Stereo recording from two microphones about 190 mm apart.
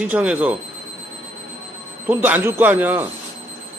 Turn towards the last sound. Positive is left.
turn(degrees=-10)  # may be behind; listen again after turning